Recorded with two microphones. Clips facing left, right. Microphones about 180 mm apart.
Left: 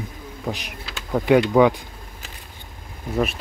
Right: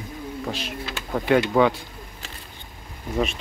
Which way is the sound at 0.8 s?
5° left (ahead or behind).